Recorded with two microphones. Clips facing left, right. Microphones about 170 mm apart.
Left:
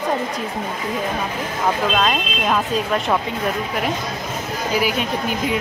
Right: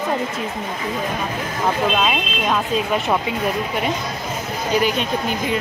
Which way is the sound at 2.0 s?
5° right (ahead or behind).